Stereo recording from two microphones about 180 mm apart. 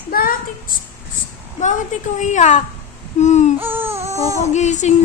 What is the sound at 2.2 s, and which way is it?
Speech, 40° left (ahead or behind).